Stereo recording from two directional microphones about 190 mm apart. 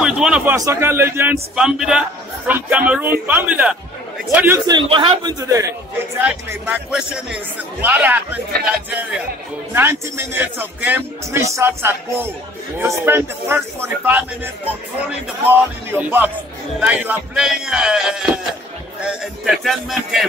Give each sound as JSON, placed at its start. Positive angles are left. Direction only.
{"t": 0.0, "sound": "a man's voice", "side_deg": -5}
{"t": 4.6, "sound": "a man's voice", "side_deg": -25}
{"t": 9.8, "sound": "a man's voice", "side_deg": -10}
{"t": 19.4, "sound": "speech", "side_deg": 0}